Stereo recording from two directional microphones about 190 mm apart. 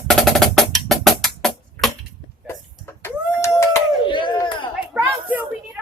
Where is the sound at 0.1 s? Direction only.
Centre (ahead or behind).